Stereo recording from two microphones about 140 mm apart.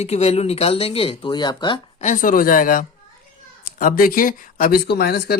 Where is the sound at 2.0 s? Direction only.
65° left (ahead or behind).